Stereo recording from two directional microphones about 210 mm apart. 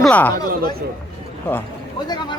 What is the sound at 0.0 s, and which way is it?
Speech, 5° left (ahead or behind).